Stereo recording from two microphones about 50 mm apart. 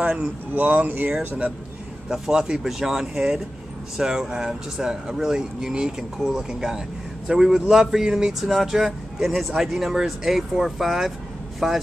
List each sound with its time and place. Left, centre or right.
0.6 s speech: right
2.0 s speech: centre